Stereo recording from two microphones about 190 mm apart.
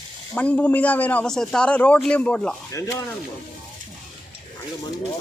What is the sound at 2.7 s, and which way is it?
Speech, 15° left (ahead or behind).